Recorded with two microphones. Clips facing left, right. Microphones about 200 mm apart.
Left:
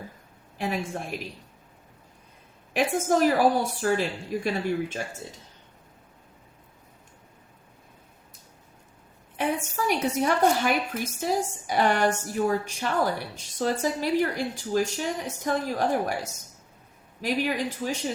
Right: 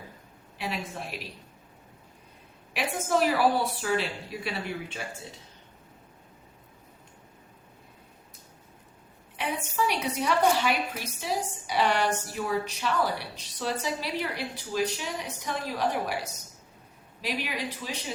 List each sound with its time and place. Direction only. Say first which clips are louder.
0.6 s a woman's voice: left 5 dB; 45° left (ahead or behind)
2.7 s a woman's voice: left 4 dB; 45° left (ahead or behind)
9.4 s a woman's voice: left 2 dB; 45° left (ahead or behind)